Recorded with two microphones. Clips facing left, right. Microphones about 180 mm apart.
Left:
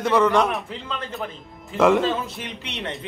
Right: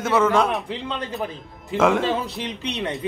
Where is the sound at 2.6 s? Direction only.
15° right (ahead or behind).